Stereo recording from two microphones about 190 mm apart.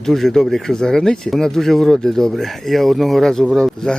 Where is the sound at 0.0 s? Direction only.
Centre (ahead or behind).